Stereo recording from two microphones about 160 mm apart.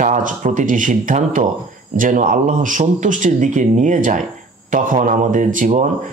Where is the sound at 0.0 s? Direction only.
55° right (ahead or behind).